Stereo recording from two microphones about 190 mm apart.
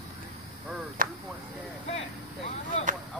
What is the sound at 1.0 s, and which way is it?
Speech, 45° right (ahead or behind).